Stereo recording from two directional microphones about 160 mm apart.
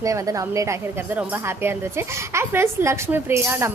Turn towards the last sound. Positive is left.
turn(degrees=-15)  # may be behind; listen again after turning